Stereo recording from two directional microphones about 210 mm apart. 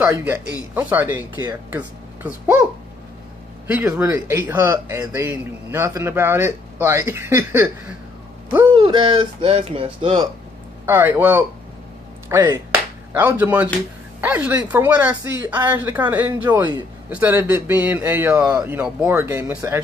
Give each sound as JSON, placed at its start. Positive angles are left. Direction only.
{"t": 0.0, "sound": "speech", "side_deg": -10}
{"t": 3.6, "sound": "speech", "side_deg": -10}
{"t": 8.7, "sound": "speech", "side_deg": -25}
{"t": 10.9, "sound": "speech", "side_deg": -10}
{"t": 16.4, "sound": "speech", "side_deg": -20}
{"t": 17.1, "sound": "speech", "side_deg": -10}